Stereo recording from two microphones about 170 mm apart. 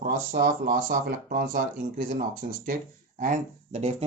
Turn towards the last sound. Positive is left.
turn(degrees=-40)  # may be behind; listen again after turning